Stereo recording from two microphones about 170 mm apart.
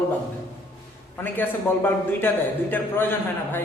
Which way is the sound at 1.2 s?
10° left (ahead or behind).